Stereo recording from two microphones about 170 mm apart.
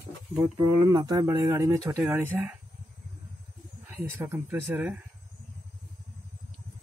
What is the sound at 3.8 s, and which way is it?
Speech, 15° right (ahead or behind).